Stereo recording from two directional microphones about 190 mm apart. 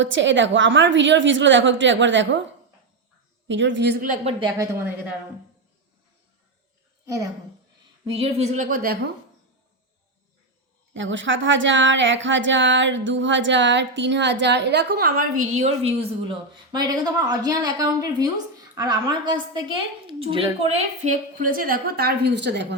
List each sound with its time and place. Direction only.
0.0 s speech: 75° right (ahead or behind)
3.4 s speech: 75° right (ahead or behind)
4.0 s a woman's voice: 40° right (ahead or behind)
4.4 s a woman's voice: 20° right (ahead or behind)
8.0 s a woman's voice: 30° right (ahead or behind); by 9.0 s 50° right (ahead or behind)
10.9 s speech: 80° right; by 15.3 s 50° right (ahead or behind)
15.4 s a woman's voice: 35° right (ahead or behind); by 22.6 s 65° right (ahead or behind)